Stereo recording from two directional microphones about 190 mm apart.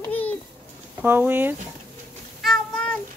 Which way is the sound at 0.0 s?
10° left (ahead or behind).